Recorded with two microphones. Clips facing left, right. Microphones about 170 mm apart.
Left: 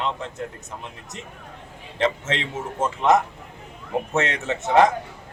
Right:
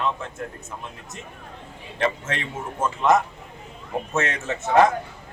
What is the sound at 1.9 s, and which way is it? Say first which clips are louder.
A man's voice: left 2 dB; 20° left (ahead or behind).